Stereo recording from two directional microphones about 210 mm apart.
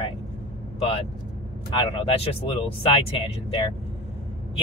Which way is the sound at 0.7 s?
25° left (ahead or behind).